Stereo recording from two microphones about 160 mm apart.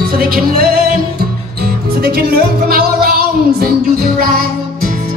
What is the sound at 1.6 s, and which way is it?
Music, 70° right (ahead or behind).